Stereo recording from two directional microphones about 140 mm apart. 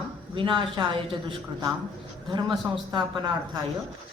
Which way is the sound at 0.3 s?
35° right (ahead or behind).